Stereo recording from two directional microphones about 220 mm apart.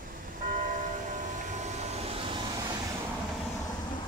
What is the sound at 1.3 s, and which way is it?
Vehicle, 35° right (ahead or behind).